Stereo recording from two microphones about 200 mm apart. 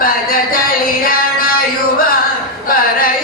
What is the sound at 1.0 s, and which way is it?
Music, 45° left (ahead or behind).